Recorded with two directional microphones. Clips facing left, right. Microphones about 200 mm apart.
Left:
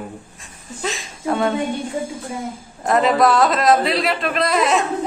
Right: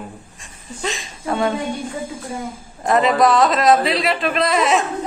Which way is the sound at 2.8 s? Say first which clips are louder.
Even; centre (ahead or behind).